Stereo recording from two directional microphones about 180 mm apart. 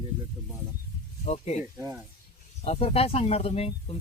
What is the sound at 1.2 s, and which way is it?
Speech, 40° left (ahead or behind).